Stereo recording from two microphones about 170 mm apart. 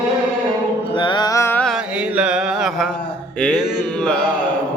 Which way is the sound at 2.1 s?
5° right (ahead or behind).